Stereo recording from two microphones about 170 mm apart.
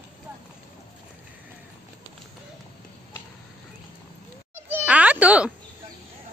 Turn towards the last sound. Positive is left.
turn(degrees=-10)  # may be behind; listen again after turning